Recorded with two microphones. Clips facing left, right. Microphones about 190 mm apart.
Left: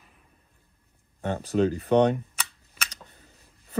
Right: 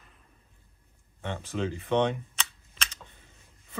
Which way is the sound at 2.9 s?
35° left (ahead or behind).